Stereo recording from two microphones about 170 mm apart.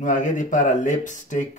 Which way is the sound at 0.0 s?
50° left (ahead or behind).